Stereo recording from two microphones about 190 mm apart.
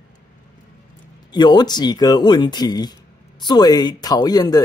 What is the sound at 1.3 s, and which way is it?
Speech, 20° left (ahead or behind).